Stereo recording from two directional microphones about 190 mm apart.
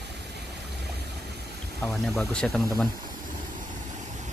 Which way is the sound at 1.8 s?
Centre (ahead or behind).